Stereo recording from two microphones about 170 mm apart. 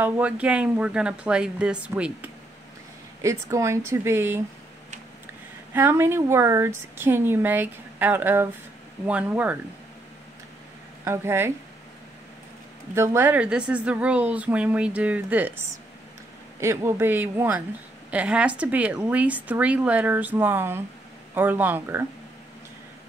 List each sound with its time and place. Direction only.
0.0 s a woman's voice: 10° right (ahead or behind)
3.2 s a woman's voice: 15° right (ahead or behind)
11.1 s a woman's voice: 15° right (ahead or behind)
12.9 s a woman's voice: 15° right (ahead or behind)